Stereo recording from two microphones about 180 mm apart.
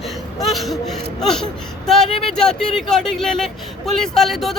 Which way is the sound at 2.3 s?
5° left (ahead or behind).